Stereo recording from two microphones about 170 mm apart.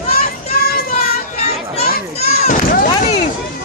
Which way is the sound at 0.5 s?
60° left (ahead or behind).